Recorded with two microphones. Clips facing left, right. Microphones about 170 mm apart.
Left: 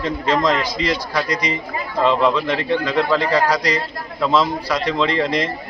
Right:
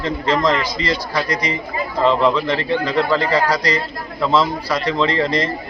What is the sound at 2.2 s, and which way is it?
A man's voice, 15° left (ahead or behind).